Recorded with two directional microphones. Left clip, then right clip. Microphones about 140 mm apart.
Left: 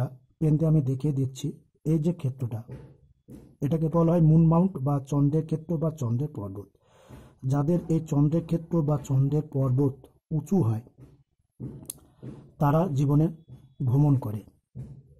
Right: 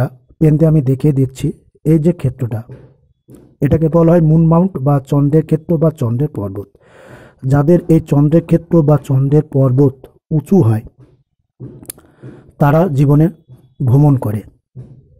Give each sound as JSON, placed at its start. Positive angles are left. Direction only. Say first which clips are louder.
{"t": 0.0, "sound": "speech", "louder": "right 15 dB", "side_deg": -20}
{"t": 6.1, "sound": "a sound", "louder": "right 15 dB", "side_deg": -20}
{"t": 7.4, "sound": "speech", "louder": "right 16 dB", "side_deg": -20}